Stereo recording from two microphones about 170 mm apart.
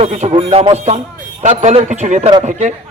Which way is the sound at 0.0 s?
40° right (ahead or behind).